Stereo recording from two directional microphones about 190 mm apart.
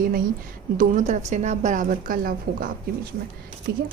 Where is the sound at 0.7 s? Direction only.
40° right (ahead or behind).